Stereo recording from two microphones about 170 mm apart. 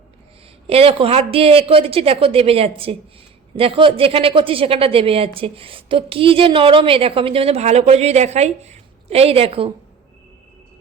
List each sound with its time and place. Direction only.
0.7 s speech: 35° right (ahead or behind)